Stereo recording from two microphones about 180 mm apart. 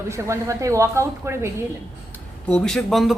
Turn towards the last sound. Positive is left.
turn(degrees=0)  # may be behind; listen again after turning